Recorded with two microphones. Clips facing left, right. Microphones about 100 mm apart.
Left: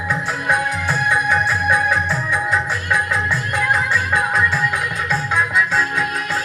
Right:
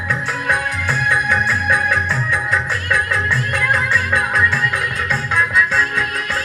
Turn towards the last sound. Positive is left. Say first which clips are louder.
# even
turn(degrees=20)  # may be behind; listen again after turning